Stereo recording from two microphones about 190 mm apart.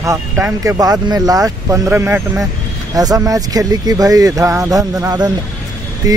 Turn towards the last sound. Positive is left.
turn(degrees=-20)  # may be behind; listen again after turning